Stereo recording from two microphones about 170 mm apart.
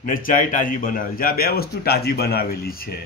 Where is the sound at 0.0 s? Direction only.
55° left (ahead or behind).